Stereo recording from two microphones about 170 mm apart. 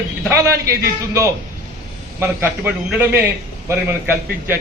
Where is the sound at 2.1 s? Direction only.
15° right (ahead or behind).